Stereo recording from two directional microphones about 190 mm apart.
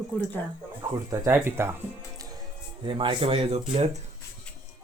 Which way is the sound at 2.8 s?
25° right (ahead or behind).